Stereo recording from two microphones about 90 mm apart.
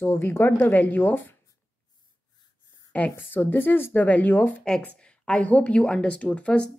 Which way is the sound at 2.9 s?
15° left (ahead or behind).